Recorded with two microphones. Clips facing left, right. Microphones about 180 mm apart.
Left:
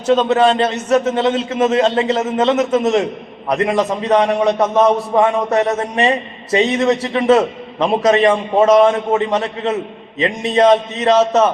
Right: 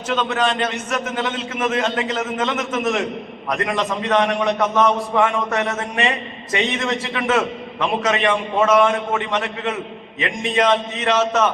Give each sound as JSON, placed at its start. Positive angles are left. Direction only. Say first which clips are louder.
{"t": 0.1, "sound": "a man's voice", "louder": "left 8 dB", "side_deg": 30}
{"t": 4.1, "sound": "a man's voice", "louder": "left 5 dB", "side_deg": 30}